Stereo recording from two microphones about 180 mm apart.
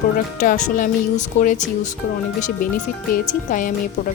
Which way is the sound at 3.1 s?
45° left (ahead or behind).